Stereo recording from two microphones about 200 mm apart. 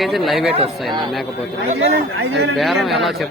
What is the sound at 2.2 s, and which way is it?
Speech, 60° right (ahead or behind).